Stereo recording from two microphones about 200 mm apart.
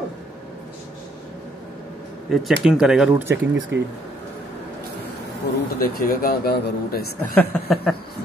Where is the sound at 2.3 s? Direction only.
Centre (ahead or behind).